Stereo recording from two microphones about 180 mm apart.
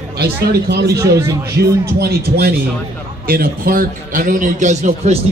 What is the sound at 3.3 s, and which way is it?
A man's voice, 50° right (ahead or behind).